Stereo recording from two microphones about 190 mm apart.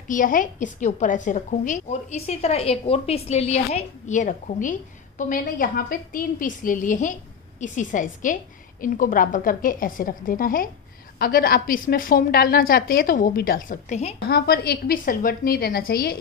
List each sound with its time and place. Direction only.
0.1 s a woman's voice: 45° left (ahead or behind)
14.2 s a woman's voice: 55° left (ahead or behind)